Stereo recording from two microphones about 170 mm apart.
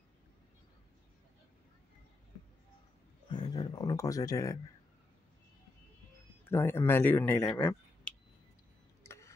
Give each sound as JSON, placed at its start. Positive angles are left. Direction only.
{"t": 3.3, "sound": "speech", "side_deg": 25}
{"t": 6.5, "sound": "speech", "side_deg": 15}
{"t": 9.0, "sound": "a sound", "side_deg": 15}